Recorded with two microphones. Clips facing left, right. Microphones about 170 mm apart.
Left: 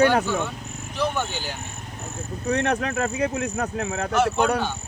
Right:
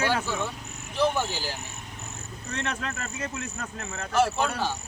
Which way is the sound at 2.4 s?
65° left (ahead or behind).